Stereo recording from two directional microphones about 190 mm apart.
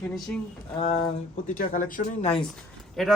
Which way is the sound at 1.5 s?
40° left (ahead or behind).